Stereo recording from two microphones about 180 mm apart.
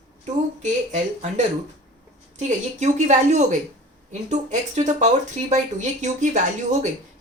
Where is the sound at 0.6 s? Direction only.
40° right (ahead or behind).